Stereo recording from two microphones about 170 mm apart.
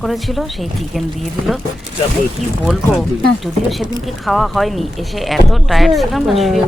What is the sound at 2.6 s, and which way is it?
Speech, centre (ahead or behind).